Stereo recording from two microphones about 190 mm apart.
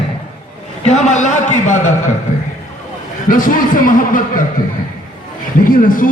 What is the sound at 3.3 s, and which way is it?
A man's voice, 45° left (ahead or behind).